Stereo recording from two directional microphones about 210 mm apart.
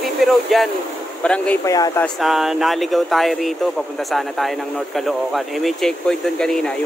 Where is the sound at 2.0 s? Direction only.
Centre (ahead or behind).